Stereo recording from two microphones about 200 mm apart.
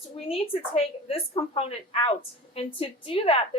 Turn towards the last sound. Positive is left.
turn(degrees=25)  # may be behind; listen again after turning